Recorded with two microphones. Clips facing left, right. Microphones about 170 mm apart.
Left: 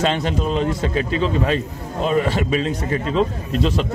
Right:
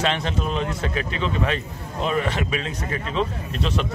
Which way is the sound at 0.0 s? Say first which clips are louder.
Left 4 dB; 35° left (ahead or behind).